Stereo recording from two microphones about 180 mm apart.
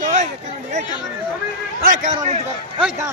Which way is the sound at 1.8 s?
45° right (ahead or behind).